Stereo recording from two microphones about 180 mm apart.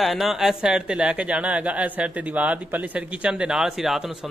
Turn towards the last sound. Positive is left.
turn(degrees=0)  # may be behind; listen again after turning